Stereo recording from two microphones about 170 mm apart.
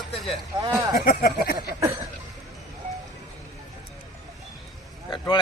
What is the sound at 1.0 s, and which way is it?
Speech, 60° left (ahead or behind).